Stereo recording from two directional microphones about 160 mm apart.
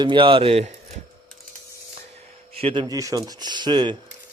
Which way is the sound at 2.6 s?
35° right (ahead or behind).